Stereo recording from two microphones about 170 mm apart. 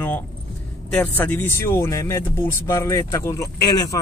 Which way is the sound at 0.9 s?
10° left (ahead or behind).